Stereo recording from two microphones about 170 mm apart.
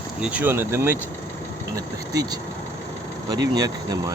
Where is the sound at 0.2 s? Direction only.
10° right (ahead or behind).